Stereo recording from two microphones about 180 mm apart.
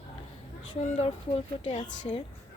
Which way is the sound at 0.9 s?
35° left (ahead or behind).